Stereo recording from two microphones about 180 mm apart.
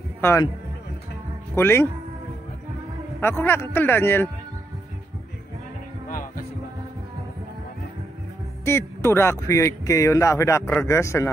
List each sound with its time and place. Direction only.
0.2 s a man's voice: 15° left (ahead or behind)
1.5 s speech: 15° left (ahead or behind)
3.2 s speech: 15° left (ahead or behind)
6.0 s music: 50° left (ahead or behind)
8.6 s speech: 15° left (ahead or behind)